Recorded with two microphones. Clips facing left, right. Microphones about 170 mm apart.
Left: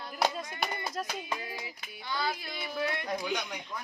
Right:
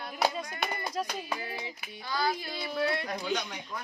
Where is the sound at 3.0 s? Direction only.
15° left (ahead or behind).